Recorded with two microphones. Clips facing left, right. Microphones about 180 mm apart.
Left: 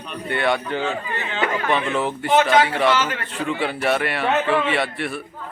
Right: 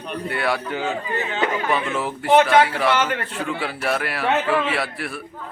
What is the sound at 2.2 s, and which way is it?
Speech, 60° right (ahead or behind).